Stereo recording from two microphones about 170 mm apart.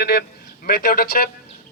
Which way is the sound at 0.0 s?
70° left (ahead or behind).